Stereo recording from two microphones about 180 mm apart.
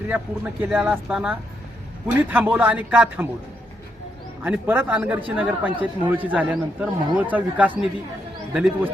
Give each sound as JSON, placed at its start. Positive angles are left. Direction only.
{"t": 0.1, "sound": "a man's voice", "side_deg": -10}
{"t": 4.4, "sound": "a man's voice", "side_deg": -10}